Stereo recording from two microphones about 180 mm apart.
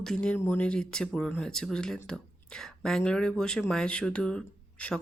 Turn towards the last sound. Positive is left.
turn(degrees=5)  # may be behind; listen again after turning